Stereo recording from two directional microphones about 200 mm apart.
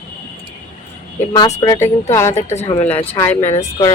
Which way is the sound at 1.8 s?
15° left (ahead or behind).